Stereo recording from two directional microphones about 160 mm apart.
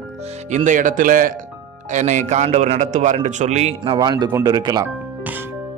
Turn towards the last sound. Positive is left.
turn(degrees=-25)  # may be behind; listen again after turning